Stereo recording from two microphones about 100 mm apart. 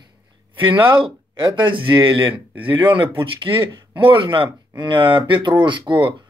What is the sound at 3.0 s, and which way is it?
Speech, 55° right (ahead or behind).